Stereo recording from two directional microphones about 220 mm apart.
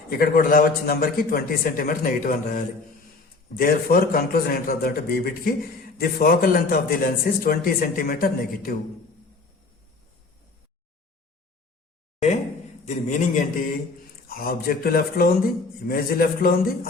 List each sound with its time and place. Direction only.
0.1 s a man's voice: 40° left (ahead or behind)
12.8 s a man's voice: 35° left (ahead or behind)